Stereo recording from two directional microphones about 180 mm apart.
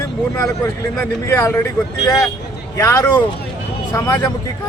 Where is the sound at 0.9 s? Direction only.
15° left (ahead or behind).